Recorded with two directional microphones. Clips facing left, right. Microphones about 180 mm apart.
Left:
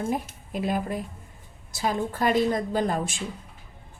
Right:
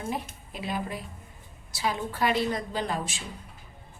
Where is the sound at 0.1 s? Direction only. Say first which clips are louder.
Left 5 dB; 50° left (ahead or behind).